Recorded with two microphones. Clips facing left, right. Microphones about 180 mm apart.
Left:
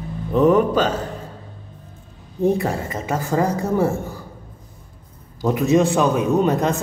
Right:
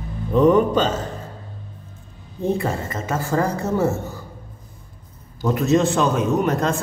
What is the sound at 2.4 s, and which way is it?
A woman's voice, 15° left (ahead or behind).